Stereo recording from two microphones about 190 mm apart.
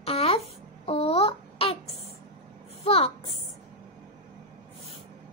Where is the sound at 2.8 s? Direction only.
30° left (ahead or behind).